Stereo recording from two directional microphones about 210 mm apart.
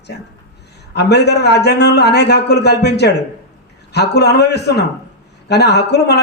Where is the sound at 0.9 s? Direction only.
50° left (ahead or behind).